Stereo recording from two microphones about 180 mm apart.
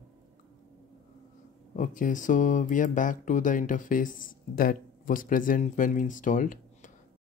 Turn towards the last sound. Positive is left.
turn(degrees=45)  # may be behind; listen again after turning